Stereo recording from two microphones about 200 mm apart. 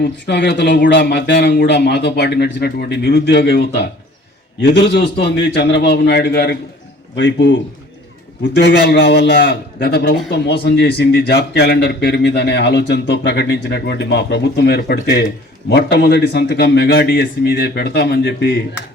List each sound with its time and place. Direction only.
0.0 s a man's voice: 60° left (ahead or behind)
7.2 s a man's voice: 70° left (ahead or behind); by 18.6 s 55° left (ahead or behind)